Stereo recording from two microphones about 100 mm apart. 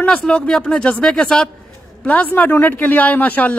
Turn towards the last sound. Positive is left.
turn(degrees=15)  # may be behind; listen again after turning